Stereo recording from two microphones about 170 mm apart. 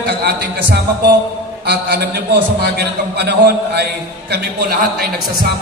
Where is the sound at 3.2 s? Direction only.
75° right (ahead or behind).